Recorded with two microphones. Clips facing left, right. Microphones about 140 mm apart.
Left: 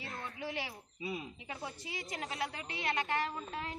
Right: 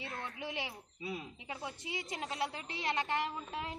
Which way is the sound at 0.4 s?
20° right (ahead or behind).